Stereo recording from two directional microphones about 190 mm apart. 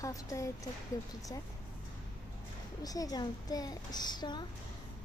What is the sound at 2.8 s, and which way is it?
A woman's voice, 20° left (ahead or behind).